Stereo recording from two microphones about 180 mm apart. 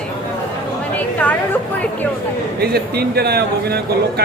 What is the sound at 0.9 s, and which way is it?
Chatter, 10° left (ahead or behind).